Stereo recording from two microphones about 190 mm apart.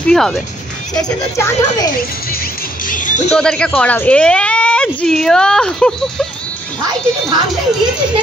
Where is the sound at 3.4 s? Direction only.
5° left (ahead or behind).